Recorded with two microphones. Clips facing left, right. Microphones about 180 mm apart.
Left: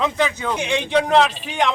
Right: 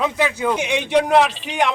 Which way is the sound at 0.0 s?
10° right (ahead or behind).